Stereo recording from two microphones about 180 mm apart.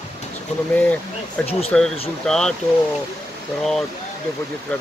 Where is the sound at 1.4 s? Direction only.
35° left (ahead or behind).